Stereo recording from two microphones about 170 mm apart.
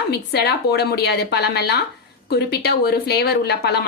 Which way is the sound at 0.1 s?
75° left (ahead or behind).